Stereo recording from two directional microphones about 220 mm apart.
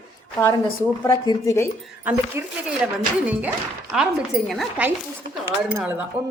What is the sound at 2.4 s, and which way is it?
Speech, 10° right (ahead or behind).